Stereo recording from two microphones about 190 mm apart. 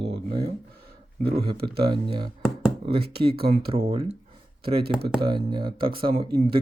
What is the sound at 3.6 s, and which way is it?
Speech, 30° right (ahead or behind).